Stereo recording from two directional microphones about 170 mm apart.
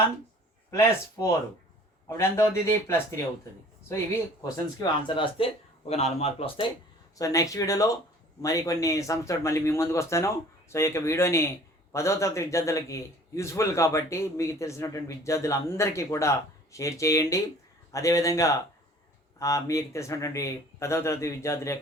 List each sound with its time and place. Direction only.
0.7 s speech: 15° left (ahead or behind)
4.4 s speech: 25° left (ahead or behind)
7.2 s speech: 20° left (ahead or behind)